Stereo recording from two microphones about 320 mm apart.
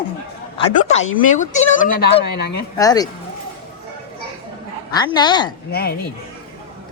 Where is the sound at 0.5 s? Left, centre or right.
Centre.